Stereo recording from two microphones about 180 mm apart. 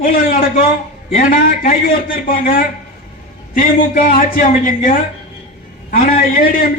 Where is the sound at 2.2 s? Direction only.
50° left (ahead or behind).